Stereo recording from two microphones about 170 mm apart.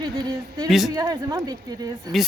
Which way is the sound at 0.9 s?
20° right (ahead or behind).